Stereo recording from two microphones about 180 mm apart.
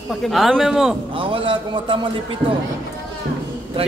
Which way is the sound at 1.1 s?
30° right (ahead or behind).